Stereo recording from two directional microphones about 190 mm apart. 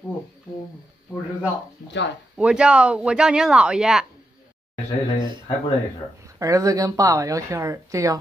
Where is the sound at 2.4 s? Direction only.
5° right (ahead or behind).